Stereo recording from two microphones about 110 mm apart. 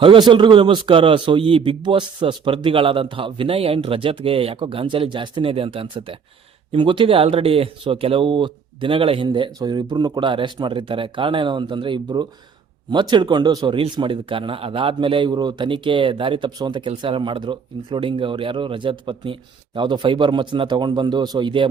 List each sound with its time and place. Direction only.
0.0 s a man's voice: 50° right (ahead or behind)
13.9 s a man's voice: 50° right (ahead or behind)